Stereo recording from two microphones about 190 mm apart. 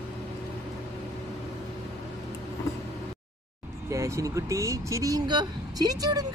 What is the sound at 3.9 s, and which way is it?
Speech, 15° right (ahead or behind).